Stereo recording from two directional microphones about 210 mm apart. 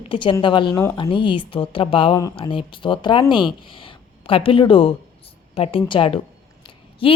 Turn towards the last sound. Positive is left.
turn(degrees=25)  # may be behind; listen again after turning